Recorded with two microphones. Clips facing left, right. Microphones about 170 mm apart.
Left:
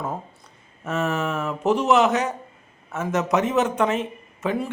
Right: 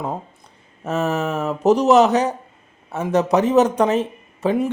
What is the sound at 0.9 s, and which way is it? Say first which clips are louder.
Speech: right 3 dB; 35° right (ahead or behind).